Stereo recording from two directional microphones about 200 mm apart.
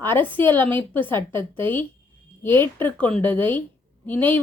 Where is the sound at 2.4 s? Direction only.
10° left (ahead or behind).